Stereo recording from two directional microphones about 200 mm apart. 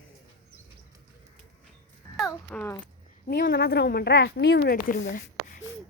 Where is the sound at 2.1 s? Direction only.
5° left (ahead or behind).